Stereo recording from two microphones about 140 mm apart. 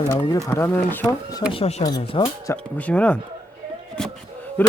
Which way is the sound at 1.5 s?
45° left (ahead or behind).